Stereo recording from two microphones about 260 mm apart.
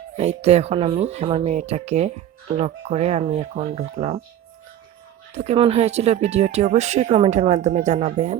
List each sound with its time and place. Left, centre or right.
0.2 s speech: right
5.3 s speech: right